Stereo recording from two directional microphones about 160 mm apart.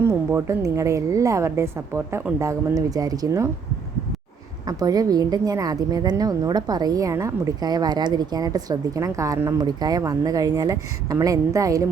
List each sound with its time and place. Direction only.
0.0 s a woman's voice: 15° right (ahead or behind)
4.6 s a woman's voice: 25° right (ahead or behind)